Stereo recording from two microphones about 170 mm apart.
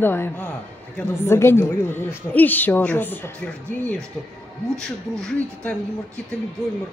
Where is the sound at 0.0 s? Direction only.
10° left (ahead or behind).